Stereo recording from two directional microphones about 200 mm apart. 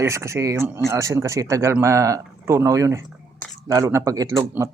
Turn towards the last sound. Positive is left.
turn(degrees=-15)  # may be behind; listen again after turning